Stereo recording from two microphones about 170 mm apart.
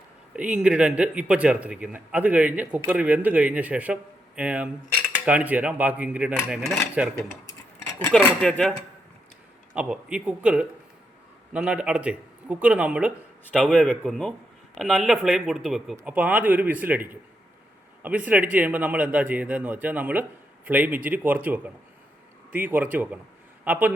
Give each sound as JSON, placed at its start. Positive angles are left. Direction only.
{"t": 0.3, "sound": "speech", "side_deg": -5}
{"t": 7.4, "sound": "a sound", "side_deg": 20}
{"t": 8.1, "sound": "speech", "side_deg": 5}
{"t": 9.7, "sound": "speech", "side_deg": -5}
{"t": 13.7, "sound": "a man's voice", "side_deg": 5}